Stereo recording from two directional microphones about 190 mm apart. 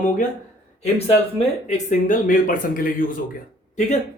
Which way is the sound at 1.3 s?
40° left (ahead or behind).